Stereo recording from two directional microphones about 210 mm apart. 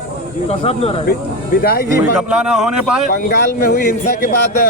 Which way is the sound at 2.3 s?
5° right (ahead or behind).